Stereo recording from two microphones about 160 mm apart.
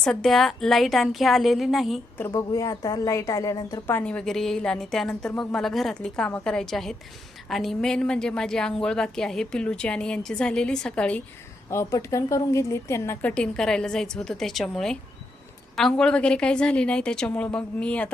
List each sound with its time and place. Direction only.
0.0 s a woman's voice: 5° left (ahead or behind)
2.1 s a woman's voice: 20° left (ahead or behind)
11.7 s a woman's voice: 20° left (ahead or behind)
13.3 s a woman's voice: 5° left (ahead or behind)